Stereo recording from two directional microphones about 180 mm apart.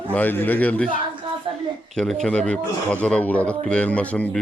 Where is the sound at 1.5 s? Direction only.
30° right (ahead or behind).